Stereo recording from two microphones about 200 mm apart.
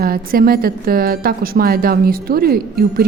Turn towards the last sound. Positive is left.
turn(degrees=-50)  # may be behind; listen again after turning